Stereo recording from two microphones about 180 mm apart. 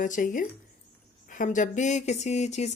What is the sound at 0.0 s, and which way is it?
Speech, 45° left (ahead or behind).